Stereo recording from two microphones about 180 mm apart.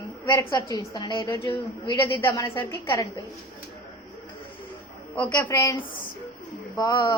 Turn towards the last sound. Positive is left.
turn(degrees=20)  # may be behind; listen again after turning